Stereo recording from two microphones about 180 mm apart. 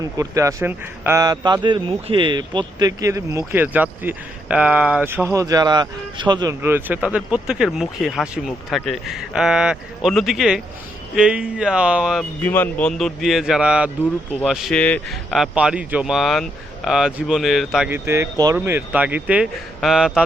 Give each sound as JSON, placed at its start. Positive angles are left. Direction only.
{"t": 0.0, "sound": "a man's voice", "side_deg": -20}
{"t": 12.4, "sound": "a man's voice", "side_deg": 10}